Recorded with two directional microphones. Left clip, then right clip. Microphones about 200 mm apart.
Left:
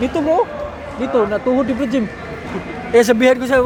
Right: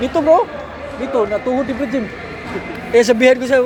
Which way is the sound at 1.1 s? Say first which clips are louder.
Left 1 dB; 10° left (ahead or behind).